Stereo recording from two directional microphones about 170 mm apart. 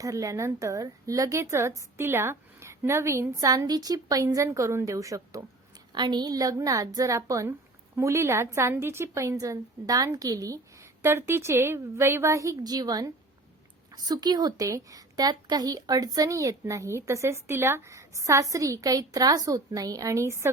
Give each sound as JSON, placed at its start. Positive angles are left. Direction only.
{"t": 0.0, "sound": "a woman's voice", "side_deg": -20}